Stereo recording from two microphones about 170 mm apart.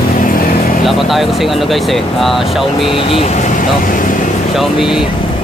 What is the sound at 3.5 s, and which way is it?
Speech, 50° left (ahead or behind).